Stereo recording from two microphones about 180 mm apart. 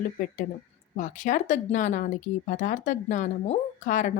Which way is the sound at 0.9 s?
45° left (ahead or behind).